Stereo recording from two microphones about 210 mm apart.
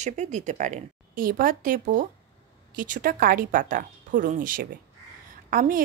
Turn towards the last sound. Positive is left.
turn(degrees=-40)  # may be behind; listen again after turning